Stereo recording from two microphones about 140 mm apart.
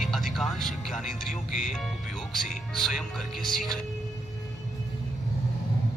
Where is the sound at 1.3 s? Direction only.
60° left (ahead or behind).